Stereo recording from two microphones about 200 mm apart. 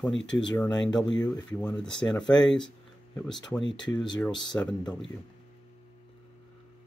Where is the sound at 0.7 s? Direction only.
20° left (ahead or behind).